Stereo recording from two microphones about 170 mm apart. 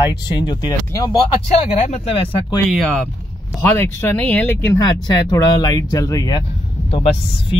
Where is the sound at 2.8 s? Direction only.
5° left (ahead or behind); by 6.4 s 25° left (ahead or behind).